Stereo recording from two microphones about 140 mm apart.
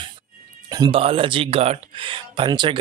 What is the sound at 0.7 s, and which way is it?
Speech, 35° right (ahead or behind).